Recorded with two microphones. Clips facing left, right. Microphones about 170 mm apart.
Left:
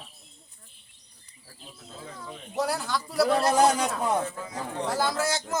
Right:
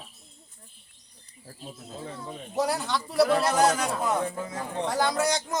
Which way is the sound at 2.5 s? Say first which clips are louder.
Right 1 dB; centre (ahead or behind).